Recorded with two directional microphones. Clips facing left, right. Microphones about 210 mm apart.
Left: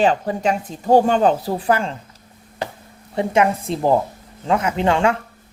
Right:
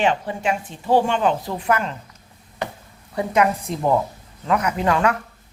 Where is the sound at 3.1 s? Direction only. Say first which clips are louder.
Left 2 dB; 25° left (ahead or behind).